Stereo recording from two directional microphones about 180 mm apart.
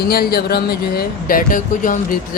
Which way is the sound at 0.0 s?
60° left (ahead or behind).